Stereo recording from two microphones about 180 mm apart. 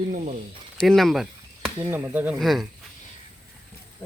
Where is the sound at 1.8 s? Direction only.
10° right (ahead or behind).